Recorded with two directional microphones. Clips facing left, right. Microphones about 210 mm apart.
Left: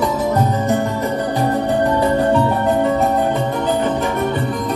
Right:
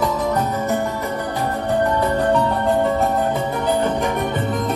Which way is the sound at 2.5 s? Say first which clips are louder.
Left 2 dB; 5° left (ahead or behind).